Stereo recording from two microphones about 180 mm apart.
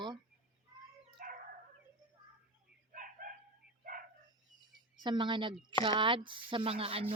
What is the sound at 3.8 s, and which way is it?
Dog, 50° right (ahead or behind).